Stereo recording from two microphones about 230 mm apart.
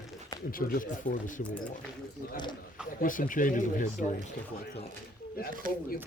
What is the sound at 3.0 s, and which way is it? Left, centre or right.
Speech, left.